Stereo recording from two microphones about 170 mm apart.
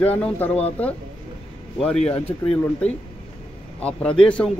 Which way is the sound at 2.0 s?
35° left (ahead or behind).